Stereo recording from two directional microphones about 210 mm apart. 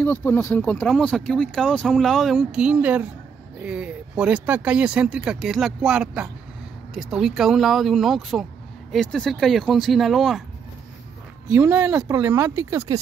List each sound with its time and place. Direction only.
0.0 s speech: 10° left (ahead or behind)
11.5 s speech: 10° right (ahead or behind)
12.1 s speech: 15° right (ahead or behind)